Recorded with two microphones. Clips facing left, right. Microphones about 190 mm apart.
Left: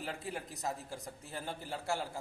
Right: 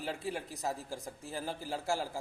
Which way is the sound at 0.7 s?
35° right (ahead or behind).